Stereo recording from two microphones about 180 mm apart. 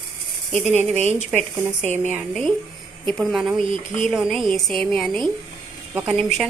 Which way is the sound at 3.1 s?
Centre (ahead or behind).